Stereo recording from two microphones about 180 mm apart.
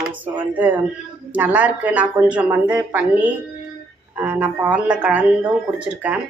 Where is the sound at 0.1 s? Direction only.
10° right (ahead or behind).